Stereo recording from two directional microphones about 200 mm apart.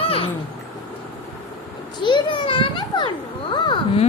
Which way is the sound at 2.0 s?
25° left (ahead or behind).